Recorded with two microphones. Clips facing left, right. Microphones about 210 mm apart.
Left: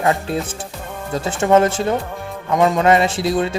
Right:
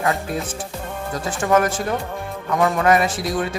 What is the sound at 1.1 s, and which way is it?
Speech, 25° left (ahead or behind).